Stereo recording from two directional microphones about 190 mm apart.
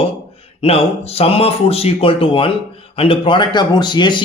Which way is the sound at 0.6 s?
30° left (ahead or behind).